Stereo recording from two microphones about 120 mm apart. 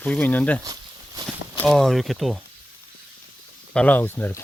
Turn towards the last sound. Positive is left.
turn(degrees=20)  # may be behind; listen again after turning